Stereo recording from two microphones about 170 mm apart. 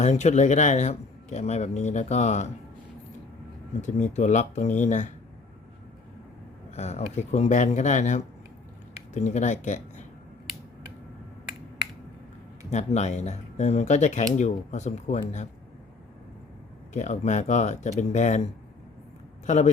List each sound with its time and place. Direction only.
0.0 s speech: 40° left (ahead or behind)
3.8 s speech: 45° left (ahead or behind)
6.7 s speech: 40° left (ahead or behind)
12.7 s speech: 40° left (ahead or behind)
16.9 s speech: 45° left (ahead or behind)